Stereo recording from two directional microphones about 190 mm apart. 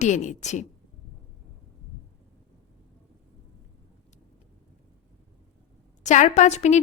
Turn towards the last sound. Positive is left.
turn(degrees=35)  # may be behind; listen again after turning